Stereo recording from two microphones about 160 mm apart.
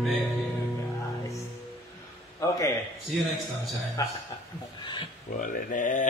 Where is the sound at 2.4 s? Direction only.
20° left (ahead or behind).